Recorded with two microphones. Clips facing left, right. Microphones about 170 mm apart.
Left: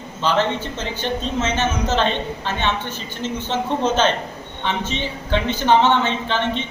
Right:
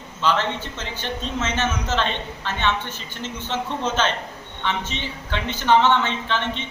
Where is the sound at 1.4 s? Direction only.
30° left (ahead or behind).